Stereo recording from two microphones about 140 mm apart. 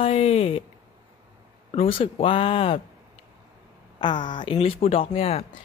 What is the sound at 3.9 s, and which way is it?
A woman's voice, 35° left (ahead or behind).